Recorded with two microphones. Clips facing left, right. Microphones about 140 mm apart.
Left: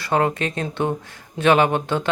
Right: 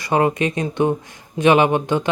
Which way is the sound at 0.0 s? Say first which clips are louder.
Right 3 dB; 10° right (ahead or behind).